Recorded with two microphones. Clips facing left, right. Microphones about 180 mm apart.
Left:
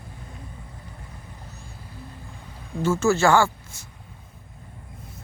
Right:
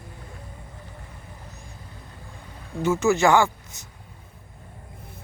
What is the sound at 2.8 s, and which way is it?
Speech, 15° right (ahead or behind).